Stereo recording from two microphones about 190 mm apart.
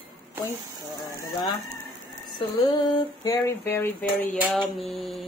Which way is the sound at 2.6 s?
25° left (ahead or behind).